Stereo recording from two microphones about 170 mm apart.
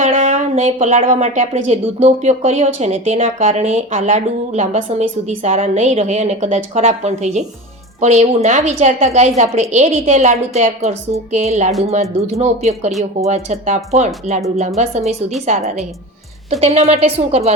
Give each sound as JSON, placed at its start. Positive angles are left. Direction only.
{"t": 0.0, "sound": "a woman's voice", "side_deg": -40}